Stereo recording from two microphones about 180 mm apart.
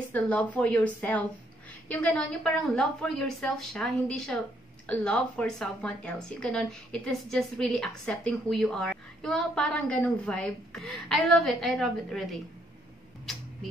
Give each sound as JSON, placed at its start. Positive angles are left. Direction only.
{"t": 0.1, "sound": "a woman's voice", "side_deg": 5}